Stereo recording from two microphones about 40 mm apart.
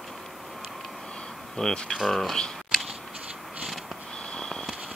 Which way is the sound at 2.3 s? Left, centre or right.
Centre.